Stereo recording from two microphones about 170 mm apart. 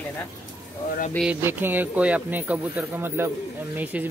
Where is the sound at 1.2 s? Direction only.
10° right (ahead or behind).